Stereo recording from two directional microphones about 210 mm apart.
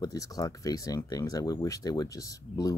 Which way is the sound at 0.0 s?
15° left (ahead or behind).